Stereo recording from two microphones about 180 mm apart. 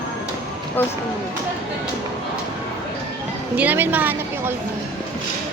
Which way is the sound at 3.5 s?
10° right (ahead or behind).